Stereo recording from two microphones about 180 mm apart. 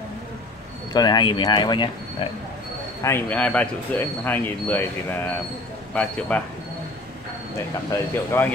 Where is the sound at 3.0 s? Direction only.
10° left (ahead or behind).